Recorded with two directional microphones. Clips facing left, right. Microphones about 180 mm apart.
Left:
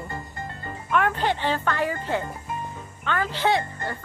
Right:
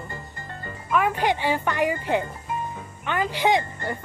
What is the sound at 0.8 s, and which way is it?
Speech, 5° right (ahead or behind).